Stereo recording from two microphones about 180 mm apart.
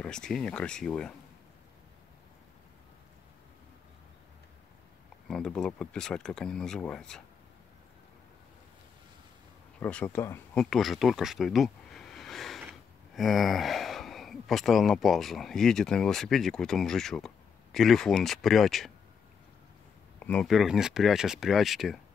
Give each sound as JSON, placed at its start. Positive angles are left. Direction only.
{"t": 0.0, "sound": "speech", "side_deg": 5}
{"t": 5.3, "sound": "speech", "side_deg": 5}
{"t": 9.8, "sound": "speech", "side_deg": 10}
{"t": 10.6, "sound": "a sound", "side_deg": 0}
{"t": 13.1, "sound": "speech", "side_deg": 0}
{"t": 20.2, "sound": "speech", "side_deg": 5}